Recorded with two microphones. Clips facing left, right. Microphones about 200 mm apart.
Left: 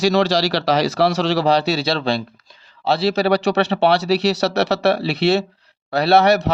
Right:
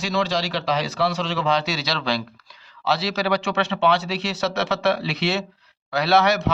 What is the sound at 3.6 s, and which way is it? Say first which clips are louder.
Speech: left 4 dB; 65° left (ahead or behind).